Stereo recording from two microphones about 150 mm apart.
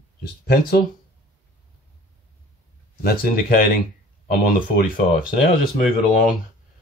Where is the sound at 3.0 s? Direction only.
80° left.